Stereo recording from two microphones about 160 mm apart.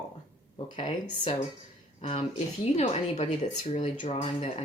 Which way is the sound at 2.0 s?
40° left (ahead or behind).